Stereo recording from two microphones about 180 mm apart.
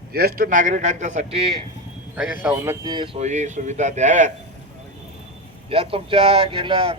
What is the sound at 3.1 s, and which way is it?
A man's voice, 40° right (ahead or behind).